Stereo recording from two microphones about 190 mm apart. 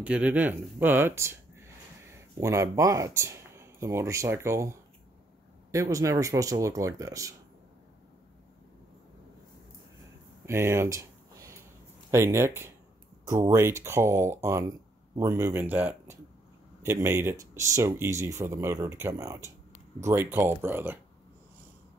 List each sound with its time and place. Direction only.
0.0 s speech: 5° right (ahead or behind)
2.4 s speech: 15° right (ahead or behind)
10.4 s a sound: 15° right (ahead or behind)
12.1 s speech: 15° right (ahead or behind)